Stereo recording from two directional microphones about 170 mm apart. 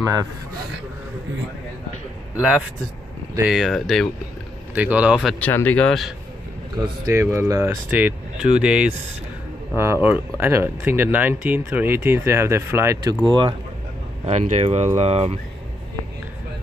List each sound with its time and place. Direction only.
0.0 s a man's voice: 20° right (ahead or behind)
3.3 s speech: 5° right (ahead or behind)
5.4 s speech: 10° left (ahead or behind)
7.1 s speech: 15° right (ahead or behind)
10.0 s speech: 10° right (ahead or behind)
13.2 s speech: 25° right (ahead or behind)
14.2 s speech: 40° right (ahead or behind)